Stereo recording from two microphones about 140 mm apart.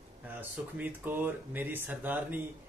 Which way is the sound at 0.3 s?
10° right (ahead or behind).